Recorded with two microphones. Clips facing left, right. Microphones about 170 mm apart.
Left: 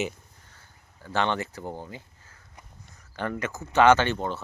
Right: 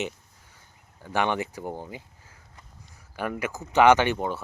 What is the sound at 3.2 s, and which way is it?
Speech, 10° right (ahead or behind).